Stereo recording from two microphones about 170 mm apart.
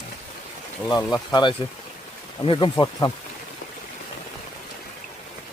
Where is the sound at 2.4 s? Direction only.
30° left (ahead or behind).